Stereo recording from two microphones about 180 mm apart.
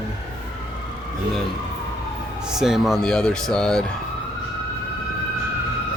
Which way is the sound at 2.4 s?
Centre (ahead or behind).